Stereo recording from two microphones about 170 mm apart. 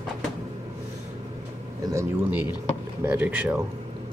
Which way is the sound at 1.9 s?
20° right (ahead or behind).